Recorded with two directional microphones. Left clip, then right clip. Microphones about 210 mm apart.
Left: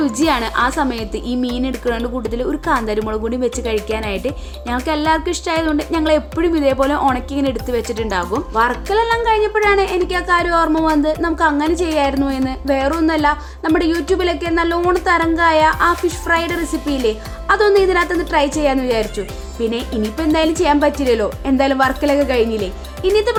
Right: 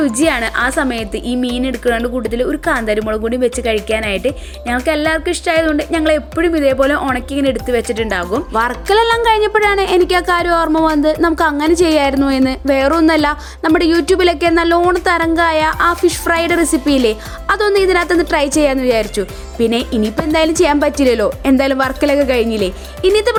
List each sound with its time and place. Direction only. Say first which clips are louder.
0.0 s a woman's voice: right 2 dB; 5° right (ahead or behind)
8.5 s a woman's voice: right 3 dB; 30° right (ahead or behind)